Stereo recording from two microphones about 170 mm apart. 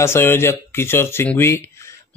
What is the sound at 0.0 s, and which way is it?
Speech, 15° left (ahead or behind).